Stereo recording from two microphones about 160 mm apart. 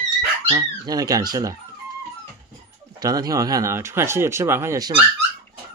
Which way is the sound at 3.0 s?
25° right (ahead or behind).